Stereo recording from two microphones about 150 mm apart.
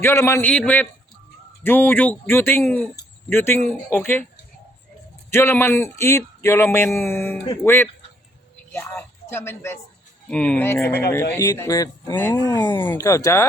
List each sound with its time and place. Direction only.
0.0 s a man's voice: 15° left (ahead or behind)
5.3 s a man's voice: 15° left (ahead or behind)
12.4 s speech: 25° left (ahead or behind)